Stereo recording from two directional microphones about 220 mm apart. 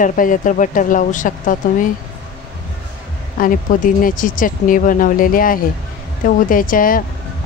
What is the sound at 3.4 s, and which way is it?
Speech, 40° left (ahead or behind).